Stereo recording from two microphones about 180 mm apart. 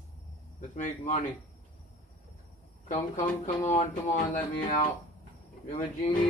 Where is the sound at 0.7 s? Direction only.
45° left (ahead or behind).